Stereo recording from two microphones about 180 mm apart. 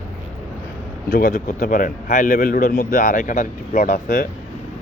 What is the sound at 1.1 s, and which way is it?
A man's voice, 50° left (ahead or behind).